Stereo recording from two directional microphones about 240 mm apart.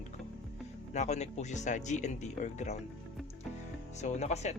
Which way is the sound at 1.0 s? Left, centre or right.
Left.